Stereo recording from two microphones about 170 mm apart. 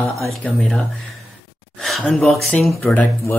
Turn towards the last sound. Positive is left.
turn(degrees=0)  # may be behind; listen again after turning